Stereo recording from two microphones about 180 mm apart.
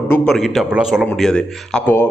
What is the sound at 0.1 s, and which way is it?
A man's voice, centre (ahead or behind).